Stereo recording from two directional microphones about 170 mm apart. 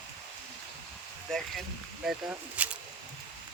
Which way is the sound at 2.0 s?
10° right (ahead or behind).